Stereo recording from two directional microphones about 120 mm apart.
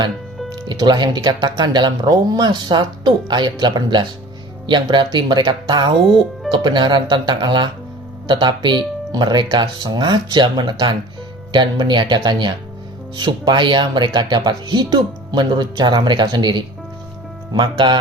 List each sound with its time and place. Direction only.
0.5 s speech: 40° right (ahead or behind)